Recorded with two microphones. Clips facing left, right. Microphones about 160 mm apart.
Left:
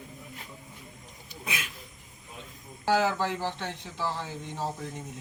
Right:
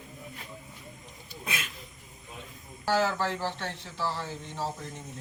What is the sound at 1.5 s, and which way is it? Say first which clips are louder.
Speech: even; 10° left (ahead or behind).